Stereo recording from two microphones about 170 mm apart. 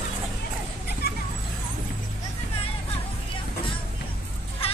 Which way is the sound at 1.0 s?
70° left (ahead or behind).